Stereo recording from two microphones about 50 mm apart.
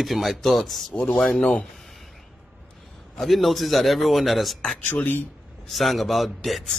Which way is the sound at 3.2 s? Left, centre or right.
Centre.